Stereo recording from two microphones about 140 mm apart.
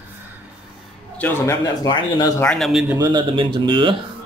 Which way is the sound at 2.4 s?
5° left (ahead or behind).